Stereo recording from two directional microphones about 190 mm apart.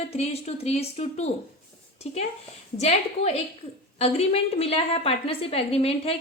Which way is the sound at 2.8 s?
35° left (ahead or behind).